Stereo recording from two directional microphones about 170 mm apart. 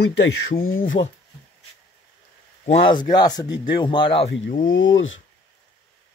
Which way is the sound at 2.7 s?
30° left (ahead or behind).